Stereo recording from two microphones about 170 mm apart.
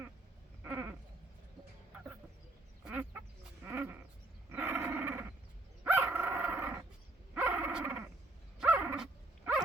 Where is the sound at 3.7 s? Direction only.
10° right (ahead or behind).